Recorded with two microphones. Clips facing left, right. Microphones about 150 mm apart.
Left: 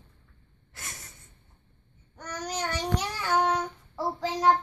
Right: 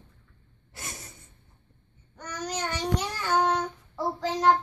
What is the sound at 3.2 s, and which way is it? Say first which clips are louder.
Child singing: even; 5° left (ahead or behind).